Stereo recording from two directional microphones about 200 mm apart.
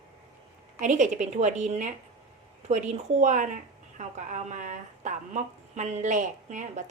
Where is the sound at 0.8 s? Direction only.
35° right (ahead or behind).